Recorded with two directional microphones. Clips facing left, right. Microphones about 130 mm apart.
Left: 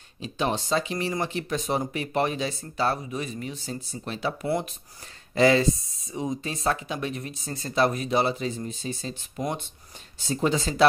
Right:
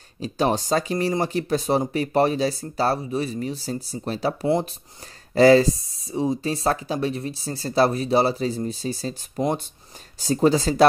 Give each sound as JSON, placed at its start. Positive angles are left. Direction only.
{"t": 0.2, "sound": "speech", "side_deg": -40}